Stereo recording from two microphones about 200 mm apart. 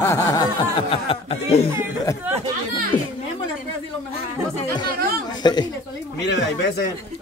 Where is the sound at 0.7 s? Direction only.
30° left (ahead or behind).